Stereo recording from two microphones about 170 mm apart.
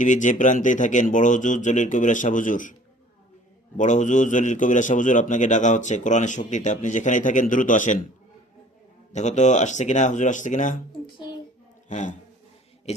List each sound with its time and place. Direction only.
0.0 s a man's voice: 45° left (ahead or behind)
3.8 s a man's voice: 45° left (ahead or behind)
9.1 s a man's voice: 45° left (ahead or behind)
11.9 s speech: 45° left (ahead or behind)